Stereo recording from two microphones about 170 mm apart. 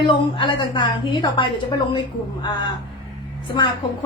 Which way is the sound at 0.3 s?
30° left (ahead or behind).